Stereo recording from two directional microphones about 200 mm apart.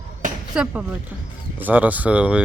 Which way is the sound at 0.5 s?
5° right (ahead or behind).